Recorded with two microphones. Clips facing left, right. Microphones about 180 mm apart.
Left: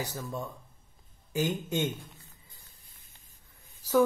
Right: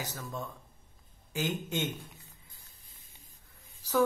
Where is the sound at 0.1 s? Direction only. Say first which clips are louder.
Left 3 dB; 10° left (ahead or behind).